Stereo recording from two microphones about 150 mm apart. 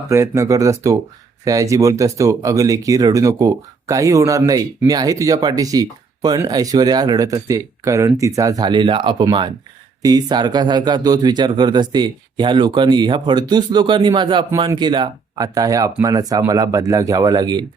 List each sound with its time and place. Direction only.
0.1 s speech: 20° right (ahead or behind)